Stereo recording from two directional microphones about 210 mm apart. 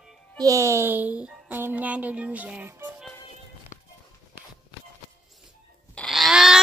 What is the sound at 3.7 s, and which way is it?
Music, 35° left (ahead or behind).